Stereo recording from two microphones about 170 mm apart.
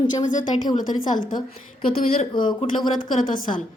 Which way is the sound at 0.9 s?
55° left (ahead or behind).